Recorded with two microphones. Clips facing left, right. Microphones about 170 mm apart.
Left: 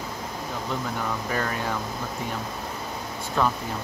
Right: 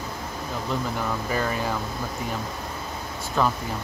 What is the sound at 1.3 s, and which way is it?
Speech, 5° right (ahead or behind).